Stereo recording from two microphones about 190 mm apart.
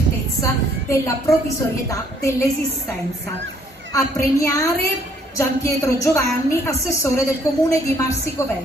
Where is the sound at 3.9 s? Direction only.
15° left (ahead or behind).